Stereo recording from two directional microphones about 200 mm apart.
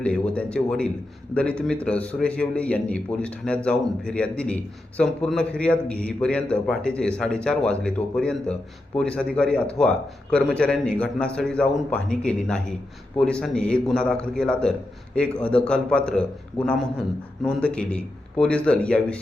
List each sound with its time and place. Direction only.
0.0 s a man's voice: 5° left (ahead or behind)
17.4 s a man's voice: 5° left (ahead or behind)